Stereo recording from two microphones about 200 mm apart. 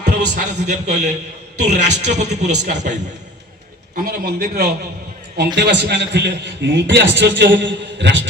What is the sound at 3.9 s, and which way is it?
A man's voice, 45° right (ahead or behind).